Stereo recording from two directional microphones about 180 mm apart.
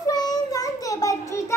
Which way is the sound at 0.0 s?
20° left (ahead or behind).